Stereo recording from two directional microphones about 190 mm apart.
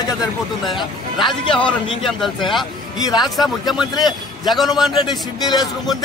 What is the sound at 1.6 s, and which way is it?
A man's voice, 5° left (ahead or behind).